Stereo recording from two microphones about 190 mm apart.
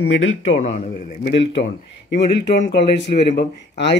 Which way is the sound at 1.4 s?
70° left (ahead or behind).